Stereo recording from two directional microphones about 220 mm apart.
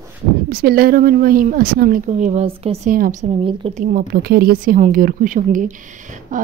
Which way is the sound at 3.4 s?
25° right (ahead or behind).